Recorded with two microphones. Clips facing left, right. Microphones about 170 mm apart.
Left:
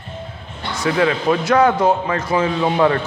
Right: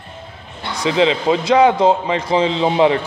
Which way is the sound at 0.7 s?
20° right (ahead or behind).